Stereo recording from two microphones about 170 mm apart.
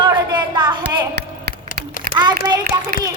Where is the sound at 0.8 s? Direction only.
75° right (ahead or behind).